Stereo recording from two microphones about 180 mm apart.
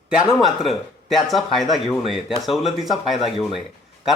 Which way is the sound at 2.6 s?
Centre (ahead or behind).